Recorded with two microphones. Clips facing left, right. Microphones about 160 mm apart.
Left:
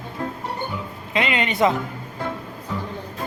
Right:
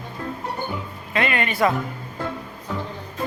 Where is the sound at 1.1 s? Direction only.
20° left (ahead or behind).